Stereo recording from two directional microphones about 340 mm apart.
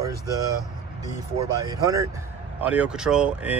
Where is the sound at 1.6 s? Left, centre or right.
Centre.